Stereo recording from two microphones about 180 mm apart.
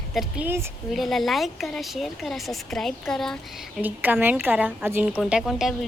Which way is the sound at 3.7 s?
10° right (ahead or behind).